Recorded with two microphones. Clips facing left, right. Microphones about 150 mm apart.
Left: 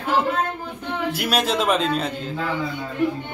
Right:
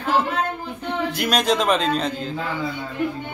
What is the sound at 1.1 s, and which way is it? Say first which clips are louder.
A man's voice: right 2 dB; 5° left (ahead or behind).